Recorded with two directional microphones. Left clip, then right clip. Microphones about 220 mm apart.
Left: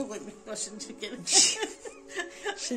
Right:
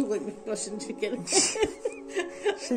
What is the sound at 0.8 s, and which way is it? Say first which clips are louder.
Music: right 7 dB; 15° left (ahead or behind).